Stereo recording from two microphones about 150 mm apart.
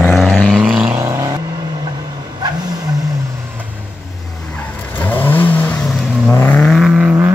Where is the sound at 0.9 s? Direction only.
20° right (ahead or behind).